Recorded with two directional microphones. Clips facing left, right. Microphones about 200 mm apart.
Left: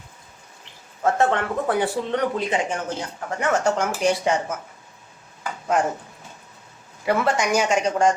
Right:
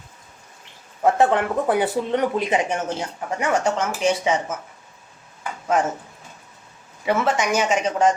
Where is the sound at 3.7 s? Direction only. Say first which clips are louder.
Even; 5° right (ahead or behind).